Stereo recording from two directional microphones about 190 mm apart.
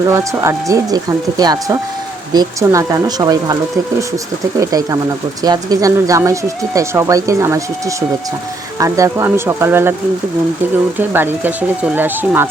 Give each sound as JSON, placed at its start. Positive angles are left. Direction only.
{"t": 0.0, "sound": "speech", "side_deg": -15}
{"t": 10.9, "sound": "speech", "side_deg": -10}